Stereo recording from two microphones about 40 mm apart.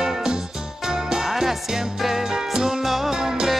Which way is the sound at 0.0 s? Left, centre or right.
Centre.